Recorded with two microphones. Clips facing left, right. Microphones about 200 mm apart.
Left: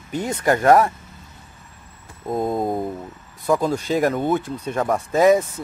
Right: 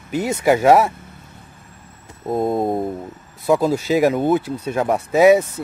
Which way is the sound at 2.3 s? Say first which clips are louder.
Right 3 dB; 25° right (ahead or behind).